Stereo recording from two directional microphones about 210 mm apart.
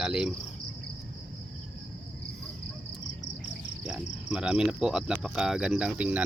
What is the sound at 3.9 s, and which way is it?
Cricket, 5° right (ahead or behind).